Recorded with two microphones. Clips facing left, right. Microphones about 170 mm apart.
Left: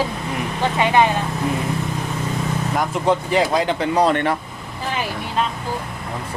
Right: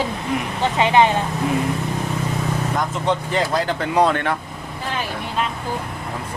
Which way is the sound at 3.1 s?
5° left (ahead or behind).